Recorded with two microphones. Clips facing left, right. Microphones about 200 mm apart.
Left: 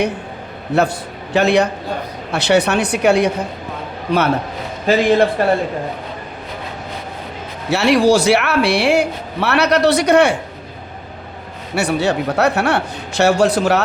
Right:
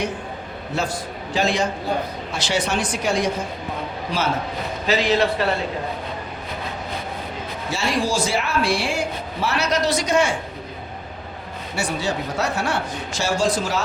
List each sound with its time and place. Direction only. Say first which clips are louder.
0.8 s speech: left 9 dB; 65° left (ahead or behind)
4.9 s a man's voice: left 6 dB; 50° left (ahead or behind)
7.7 s speech: left 11 dB; 70° left (ahead or behind)
11.7 s speech: left 8 dB; 65° left (ahead or behind)